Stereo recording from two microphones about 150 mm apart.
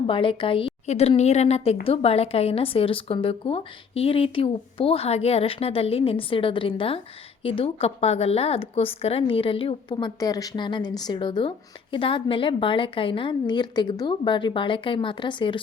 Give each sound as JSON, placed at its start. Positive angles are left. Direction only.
{"t": 0.1, "sound": "speech", "side_deg": 35}